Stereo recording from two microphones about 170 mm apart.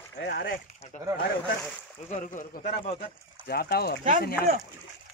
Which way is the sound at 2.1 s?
50° left (ahead or behind).